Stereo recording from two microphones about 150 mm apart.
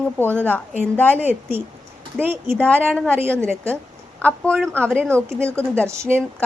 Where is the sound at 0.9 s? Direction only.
10° left (ahead or behind).